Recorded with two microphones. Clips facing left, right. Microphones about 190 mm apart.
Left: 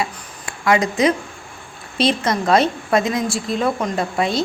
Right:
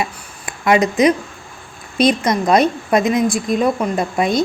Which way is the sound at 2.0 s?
15° right (ahead or behind).